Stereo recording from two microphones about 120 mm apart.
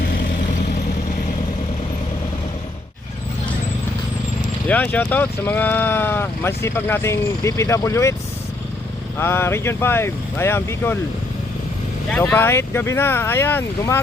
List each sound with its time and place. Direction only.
4.7 s speech: 15° left (ahead or behind)
9.1 s speech: 20° left (ahead or behind)
12.1 s speech: 15° left (ahead or behind)